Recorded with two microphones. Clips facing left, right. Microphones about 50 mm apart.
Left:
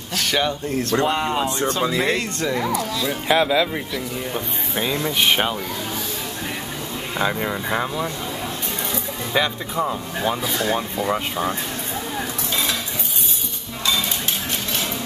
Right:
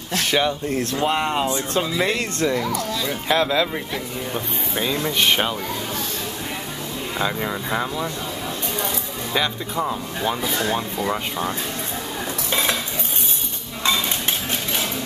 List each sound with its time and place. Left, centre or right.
0.1 s speech: centre
2.6 s speech: centre
2.9 s speech: centre
7.2 s speech: centre
9.3 s speech: centre
12.4 s cutlery: right